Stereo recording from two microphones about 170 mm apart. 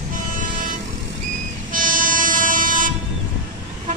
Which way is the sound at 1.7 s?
50° right (ahead or behind).